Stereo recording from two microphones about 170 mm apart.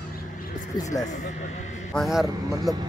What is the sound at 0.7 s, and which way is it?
Speech, 20° left (ahead or behind).